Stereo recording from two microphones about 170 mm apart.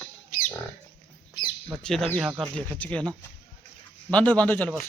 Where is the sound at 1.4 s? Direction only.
25° left (ahead or behind).